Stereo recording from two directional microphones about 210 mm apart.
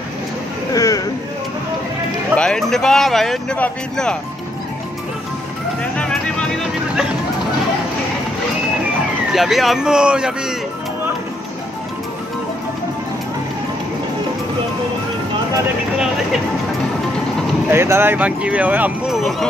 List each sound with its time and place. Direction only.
0.7 s a sound: 15° left (ahead or behind)
2.3 s speech: 5° left (ahead or behind)
9.3 s speech: centre (ahead or behind)
17.6 s speech: 10° right (ahead or behind)